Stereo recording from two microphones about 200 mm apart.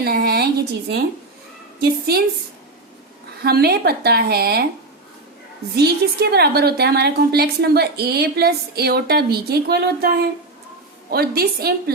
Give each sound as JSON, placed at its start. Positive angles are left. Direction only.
{"t": 0.0, "sound": "a sound", "side_deg": -50}
{"t": 1.8, "sound": "a woman's voice", "side_deg": -50}
{"t": 3.4, "sound": "a woman's voice", "side_deg": -55}
{"t": 5.7, "sound": "a woman's voice", "side_deg": -55}
{"t": 11.1, "sound": "a woman's voice", "side_deg": -50}